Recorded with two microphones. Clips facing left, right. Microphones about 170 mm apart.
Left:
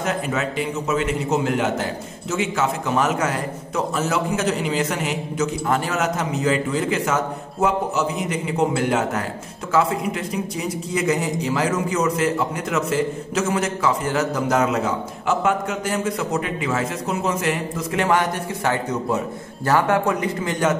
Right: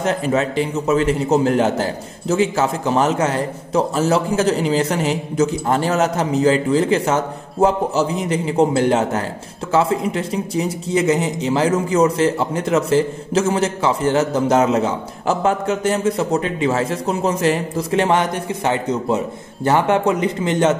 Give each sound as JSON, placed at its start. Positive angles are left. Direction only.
{"t": 0.0, "sound": "a man's voice", "side_deg": -30}